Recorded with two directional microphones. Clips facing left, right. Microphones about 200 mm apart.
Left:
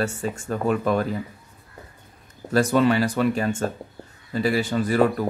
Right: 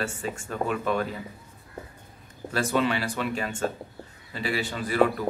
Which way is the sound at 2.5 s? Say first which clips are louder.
Left 7 dB; 45° left (ahead or behind).